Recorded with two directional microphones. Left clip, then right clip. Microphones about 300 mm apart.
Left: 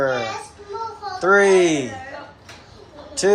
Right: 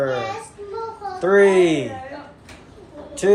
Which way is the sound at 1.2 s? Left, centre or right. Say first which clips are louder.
Even; centre.